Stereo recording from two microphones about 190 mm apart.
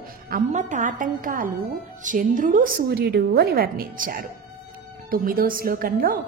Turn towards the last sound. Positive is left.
turn(degrees=-50)  # may be behind; listen again after turning